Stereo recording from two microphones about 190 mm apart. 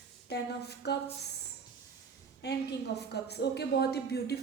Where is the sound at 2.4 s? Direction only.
60° left (ahead or behind).